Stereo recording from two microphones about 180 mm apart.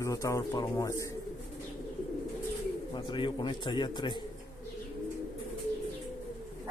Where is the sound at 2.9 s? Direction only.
25° left (ahead or behind).